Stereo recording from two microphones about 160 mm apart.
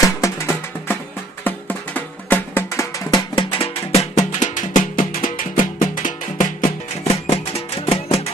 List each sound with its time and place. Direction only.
0.0 s music: 20° left (ahead or behind); by 6.7 s 55° left (ahead or behind)
7.2 s music: 35° left (ahead or behind)